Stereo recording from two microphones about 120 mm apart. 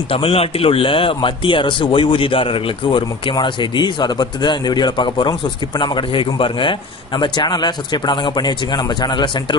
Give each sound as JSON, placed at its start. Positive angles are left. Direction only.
{"t": 0.1, "sound": "a man's voice", "side_deg": 50}